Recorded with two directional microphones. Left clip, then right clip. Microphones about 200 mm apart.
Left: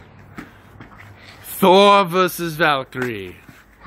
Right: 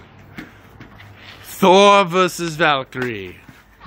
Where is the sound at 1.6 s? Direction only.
Centre (ahead or behind).